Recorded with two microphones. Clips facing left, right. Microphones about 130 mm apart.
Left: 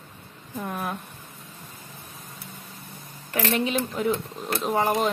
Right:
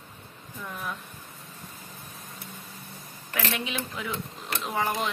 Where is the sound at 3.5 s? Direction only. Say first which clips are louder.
Left 10 dB; 40° left (ahead or behind).